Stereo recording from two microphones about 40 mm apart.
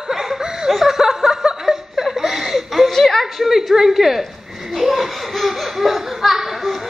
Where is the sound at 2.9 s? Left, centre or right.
Centre.